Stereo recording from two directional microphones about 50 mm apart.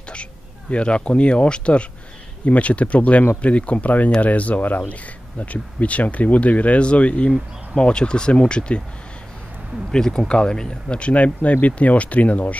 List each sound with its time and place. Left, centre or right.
0.1 s speech: left
9.8 s speech: centre; by 12.5 s left